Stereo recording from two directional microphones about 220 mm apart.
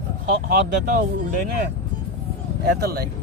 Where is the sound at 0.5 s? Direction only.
40° right (ahead or behind).